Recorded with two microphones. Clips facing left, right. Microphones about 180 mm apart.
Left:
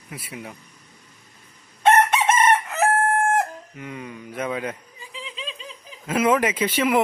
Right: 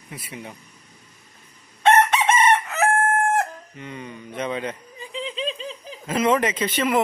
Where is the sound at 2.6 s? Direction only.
Centre (ahead or behind).